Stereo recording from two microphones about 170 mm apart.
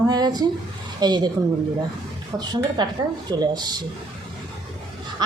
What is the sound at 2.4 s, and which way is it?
A woman's voice, 25° right (ahead or behind).